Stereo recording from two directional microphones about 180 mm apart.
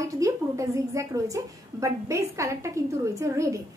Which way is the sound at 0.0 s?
20° right (ahead or behind).